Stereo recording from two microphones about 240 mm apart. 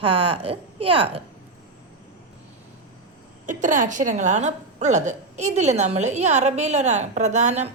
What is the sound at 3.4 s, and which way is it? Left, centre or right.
A woman's voice, right.